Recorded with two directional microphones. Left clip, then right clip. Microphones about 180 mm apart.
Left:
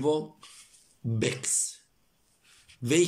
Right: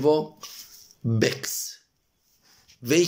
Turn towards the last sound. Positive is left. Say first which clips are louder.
# right 3 dB
turn(degrees=20)  # may be behind; listen again after turning